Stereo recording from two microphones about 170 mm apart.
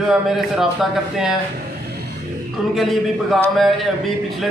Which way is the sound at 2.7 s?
Centre (ahead or behind).